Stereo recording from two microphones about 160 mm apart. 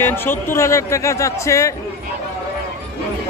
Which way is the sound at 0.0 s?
15° left (ahead or behind).